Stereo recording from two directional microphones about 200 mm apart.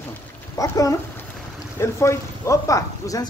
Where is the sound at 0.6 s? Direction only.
15° left (ahead or behind).